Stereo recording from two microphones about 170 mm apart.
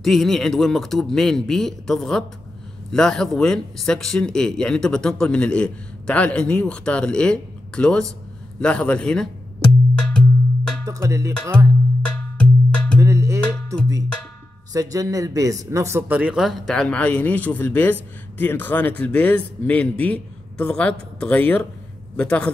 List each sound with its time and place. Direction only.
0.0 s speech: centre (ahead or behind)
9.9 s cowbell: 5° left (ahead or behind)
10.9 s music: 20° right (ahead or behind)
12.4 s cowbell: 5° left (ahead or behind)
13.0 s music: 15° right (ahead or behind)
14.7 s speech: 20° right (ahead or behind); by 22.5 s 5° left (ahead or behind)